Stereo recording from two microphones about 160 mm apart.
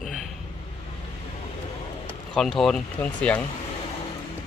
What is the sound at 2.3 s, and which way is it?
Speech, centre (ahead or behind).